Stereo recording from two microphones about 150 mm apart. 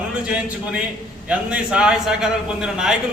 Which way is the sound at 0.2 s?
10° right (ahead or behind).